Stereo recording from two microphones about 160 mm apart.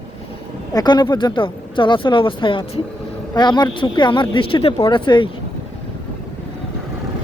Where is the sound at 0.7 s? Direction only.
25° left (ahead or behind).